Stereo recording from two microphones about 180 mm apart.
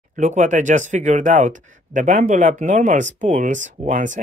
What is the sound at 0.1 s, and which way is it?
Speech, 45° right (ahead or behind).